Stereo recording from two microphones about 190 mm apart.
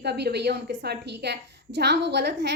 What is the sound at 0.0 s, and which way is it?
A woman's voice, 60° right (ahead or behind).